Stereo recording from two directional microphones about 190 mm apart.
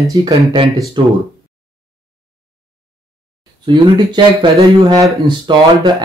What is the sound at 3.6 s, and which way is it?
Speech, 25° right (ahead or behind).